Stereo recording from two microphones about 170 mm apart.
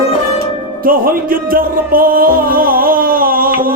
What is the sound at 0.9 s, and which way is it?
Music, 55° right (ahead or behind).